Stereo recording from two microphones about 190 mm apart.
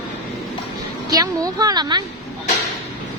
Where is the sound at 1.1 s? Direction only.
20° right (ahead or behind).